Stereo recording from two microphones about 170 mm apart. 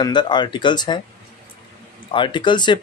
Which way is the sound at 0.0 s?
25° left (ahead or behind).